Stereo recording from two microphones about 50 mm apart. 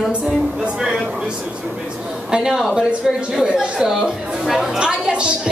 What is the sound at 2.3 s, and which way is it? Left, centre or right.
A woman's voice, centre.